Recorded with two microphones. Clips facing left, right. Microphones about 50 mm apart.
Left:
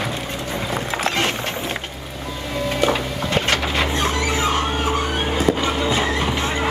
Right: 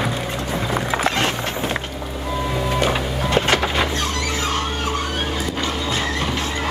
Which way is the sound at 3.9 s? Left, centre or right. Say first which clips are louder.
Left 2 dB; left.